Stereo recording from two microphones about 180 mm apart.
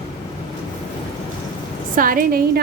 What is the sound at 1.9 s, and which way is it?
Speech, 50° right (ahead or behind).